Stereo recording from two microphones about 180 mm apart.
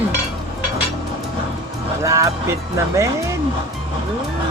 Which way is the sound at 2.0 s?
15° right (ahead or behind).